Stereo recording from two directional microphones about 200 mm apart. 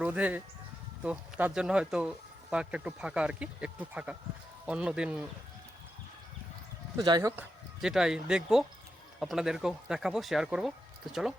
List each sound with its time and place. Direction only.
0.0 s speech: 5° right (ahead or behind)
6.9 s speech: 20° right (ahead or behind)
7.8 s speech: 5° right (ahead or behind)